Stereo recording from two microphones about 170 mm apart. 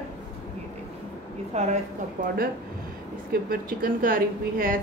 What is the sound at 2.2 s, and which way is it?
Speech, 50° right (ahead or behind).